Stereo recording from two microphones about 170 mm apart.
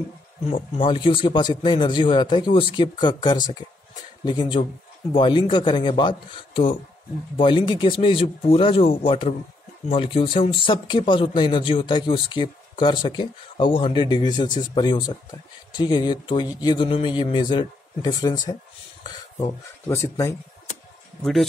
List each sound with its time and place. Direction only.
0.5 s speech: 30° left (ahead or behind)
21.2 s speech: centre (ahead or behind)